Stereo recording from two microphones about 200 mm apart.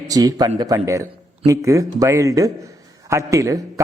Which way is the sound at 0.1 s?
15° right (ahead or behind).